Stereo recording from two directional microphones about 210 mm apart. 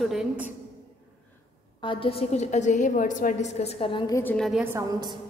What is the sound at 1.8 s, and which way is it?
A woman's voice, 25° left (ahead or behind).